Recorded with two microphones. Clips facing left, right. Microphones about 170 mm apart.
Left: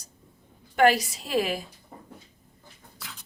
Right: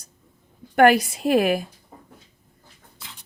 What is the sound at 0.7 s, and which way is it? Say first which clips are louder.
Speech: right 5 dB; 55° right (ahead or behind).